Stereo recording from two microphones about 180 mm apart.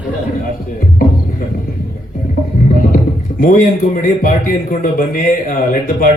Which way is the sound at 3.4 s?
50° left (ahead or behind).